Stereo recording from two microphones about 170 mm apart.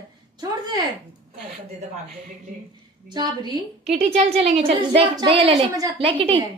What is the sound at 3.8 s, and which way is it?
A woman's voice, 40° right (ahead or behind).